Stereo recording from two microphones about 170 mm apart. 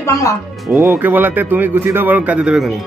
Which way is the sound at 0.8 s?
10° right (ahead or behind).